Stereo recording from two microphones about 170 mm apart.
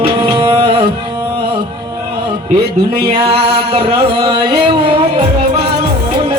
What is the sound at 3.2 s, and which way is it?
Carnatic music, 35° right (ahead or behind).